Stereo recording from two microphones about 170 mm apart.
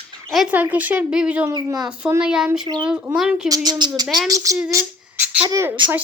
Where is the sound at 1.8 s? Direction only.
5° right (ahead or behind).